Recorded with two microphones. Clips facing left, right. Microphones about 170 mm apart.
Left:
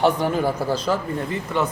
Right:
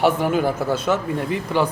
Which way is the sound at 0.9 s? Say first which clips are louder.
Right 2 dB; 15° right (ahead or behind).